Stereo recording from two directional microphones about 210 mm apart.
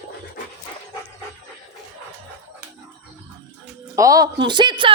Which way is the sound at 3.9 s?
15° right (ahead or behind).